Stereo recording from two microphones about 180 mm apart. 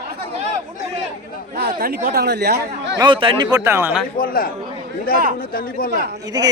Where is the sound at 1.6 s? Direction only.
55° right (ahead or behind).